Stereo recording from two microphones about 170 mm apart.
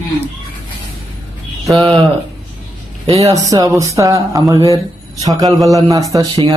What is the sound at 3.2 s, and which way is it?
Speech, 20° right (ahead or behind).